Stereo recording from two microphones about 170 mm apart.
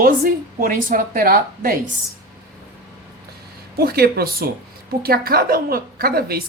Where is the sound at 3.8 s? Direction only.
65° right (ahead or behind).